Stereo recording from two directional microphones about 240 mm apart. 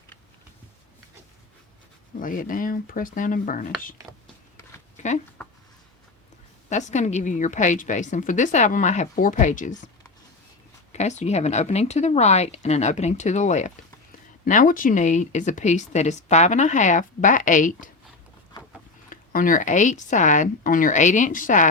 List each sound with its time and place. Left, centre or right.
2.1 s speech: left
4.9 s a sound: left
6.7 s speech: left
10.9 s speech: left
19.1 s speech: left